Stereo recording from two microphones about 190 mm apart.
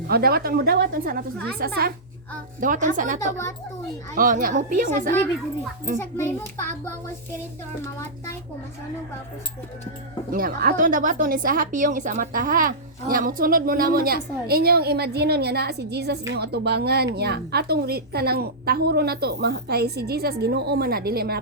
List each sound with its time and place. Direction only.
0.1 s a woman's voice: 55° right (ahead or behind)
2.6 s a woman's voice: 45° right (ahead or behind)
6.0 s a child's voice: 10° left (ahead or behind)
10.3 s a woman's voice: 50° right (ahead or behind)